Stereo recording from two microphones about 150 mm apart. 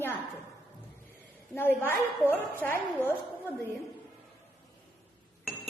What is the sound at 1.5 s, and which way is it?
A woman's voice, 15° left (ahead or behind).